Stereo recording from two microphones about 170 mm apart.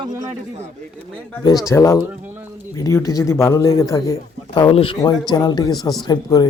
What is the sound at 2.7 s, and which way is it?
A man's voice, 20° left (ahead or behind).